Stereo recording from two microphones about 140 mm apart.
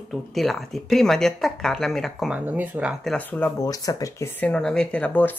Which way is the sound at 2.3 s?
10° right (ahead or behind).